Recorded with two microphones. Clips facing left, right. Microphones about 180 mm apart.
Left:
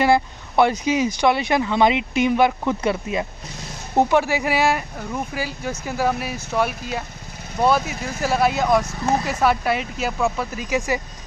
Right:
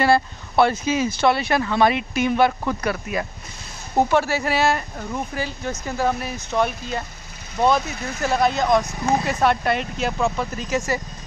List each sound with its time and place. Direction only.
0.0 s speech: 15° left (ahead or behind)